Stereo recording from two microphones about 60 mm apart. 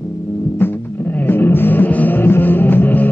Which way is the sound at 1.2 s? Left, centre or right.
Left.